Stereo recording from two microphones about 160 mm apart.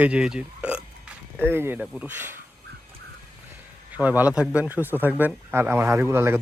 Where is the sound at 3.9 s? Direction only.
10° right (ahead or behind).